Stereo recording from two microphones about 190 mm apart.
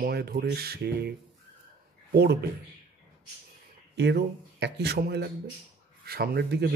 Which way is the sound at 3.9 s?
65° right (ahead or behind).